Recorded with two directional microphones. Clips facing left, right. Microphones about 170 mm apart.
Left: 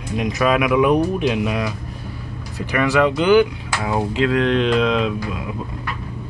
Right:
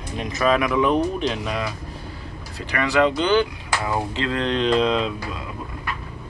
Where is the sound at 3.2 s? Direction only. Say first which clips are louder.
Left 5 dB; 10° left (ahead or behind).